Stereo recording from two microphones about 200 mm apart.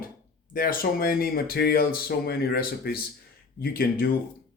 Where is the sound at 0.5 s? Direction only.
45° left (ahead or behind).